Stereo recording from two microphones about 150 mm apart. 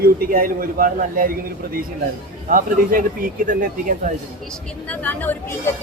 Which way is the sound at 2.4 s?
65° right (ahead or behind).